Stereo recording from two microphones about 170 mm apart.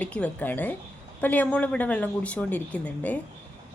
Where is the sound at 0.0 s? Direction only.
5° left (ahead or behind).